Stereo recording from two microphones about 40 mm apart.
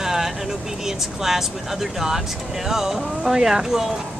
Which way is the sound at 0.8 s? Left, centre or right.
Centre.